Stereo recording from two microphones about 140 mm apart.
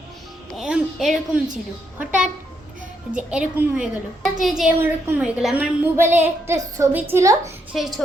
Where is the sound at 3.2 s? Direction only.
5° right (ahead or behind).